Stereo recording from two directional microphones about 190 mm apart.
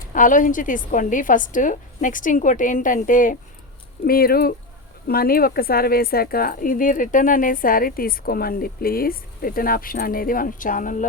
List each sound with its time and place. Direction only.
0.1 s speech: 45° left (ahead or behind)